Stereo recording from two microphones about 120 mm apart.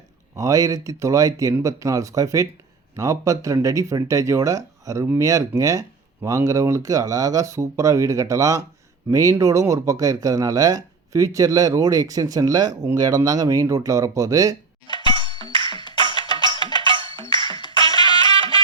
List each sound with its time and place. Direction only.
0.3 s speech: 30° right (ahead or behind)
15.2 s music: 45° left (ahead or behind)
16.6 s music: 45° right (ahead or behind)
17.4 s music: 40° left (ahead or behind)
17.7 s music: 45° right (ahead or behind)